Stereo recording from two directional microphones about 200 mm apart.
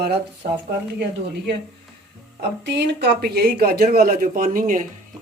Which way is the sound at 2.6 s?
60° right (ahead or behind).